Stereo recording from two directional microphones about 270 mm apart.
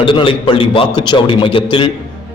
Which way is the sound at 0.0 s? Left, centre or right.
Centre.